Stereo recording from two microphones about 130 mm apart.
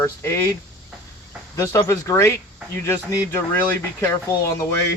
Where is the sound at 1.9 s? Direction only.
20° left (ahead or behind).